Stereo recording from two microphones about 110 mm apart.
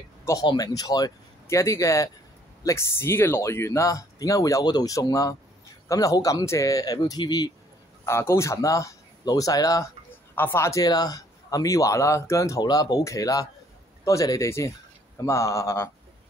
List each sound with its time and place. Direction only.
0.4 s a man's voice: 35° left (ahead or behind)
8.0 s speech: 25° left (ahead or behind)
10.3 s a man's voice: 20° left (ahead or behind)